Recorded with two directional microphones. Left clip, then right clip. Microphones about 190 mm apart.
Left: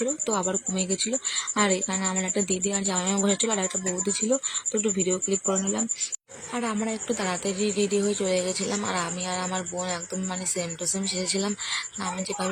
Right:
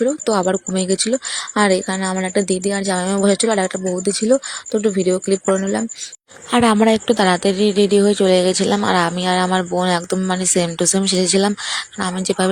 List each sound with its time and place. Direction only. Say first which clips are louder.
0.3 s speech: right 10 dB; 40° right (ahead or behind)
6.5 s speech: right 16 dB; 50° right (ahead or behind)